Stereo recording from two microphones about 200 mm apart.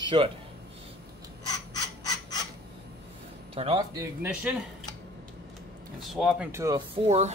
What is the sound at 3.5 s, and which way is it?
Speech, 25° right (ahead or behind).